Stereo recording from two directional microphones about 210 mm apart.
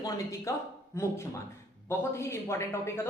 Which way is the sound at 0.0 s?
15° left (ahead or behind).